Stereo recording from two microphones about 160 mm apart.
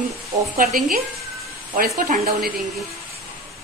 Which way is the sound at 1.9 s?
45° right (ahead or behind).